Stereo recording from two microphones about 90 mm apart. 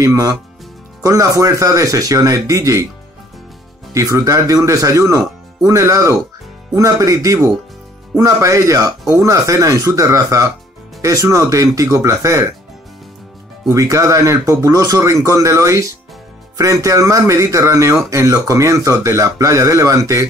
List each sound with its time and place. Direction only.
0.0 s speech: 35° right (ahead or behind)
3.9 s speech: 40° right (ahead or behind)
13.7 s speech: 35° right (ahead or behind)